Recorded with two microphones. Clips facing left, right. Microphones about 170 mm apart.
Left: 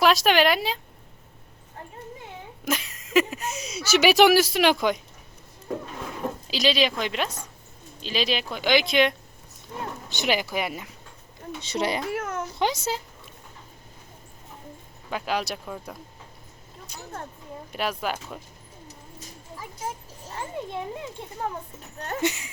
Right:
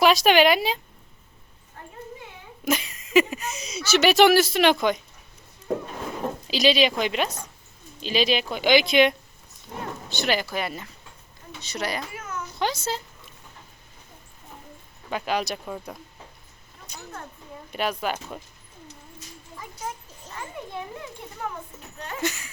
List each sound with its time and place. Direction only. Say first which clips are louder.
0.0 s speech: right 2 dB; centre (ahead or behind)
2.6 s speech: right 3 dB; centre (ahead or behind)
6.5 s speech: right 3 dB; centre (ahead or behind)
10.1 s speech: even; 15° left (ahead or behind)
11.7 s speech: left 3 dB; 25° left (ahead or behind)
12.1 s a sound: left 6 dB; 55° left (ahead or behind)
12.5 s speech: even; 20° left (ahead or behind)
15.1 s speech: right 1 dB; centre (ahead or behind)
17.7 s speech: right 2 dB; centre (ahead or behind)
20.2 s a sound: left 3 dB; 30° left (ahead or behind)
21.4 s speech: left 2 dB; 30° left (ahead or behind)